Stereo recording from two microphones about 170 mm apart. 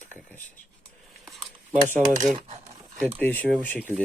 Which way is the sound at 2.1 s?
45° right (ahead or behind).